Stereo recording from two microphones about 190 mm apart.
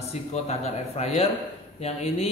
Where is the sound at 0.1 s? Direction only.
35° left (ahead or behind).